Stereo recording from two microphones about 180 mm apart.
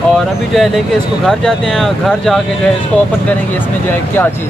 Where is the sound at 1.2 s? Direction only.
5° left (ahead or behind).